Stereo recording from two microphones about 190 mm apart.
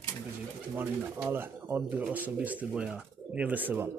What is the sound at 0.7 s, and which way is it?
Speech, 10° right (ahead or behind).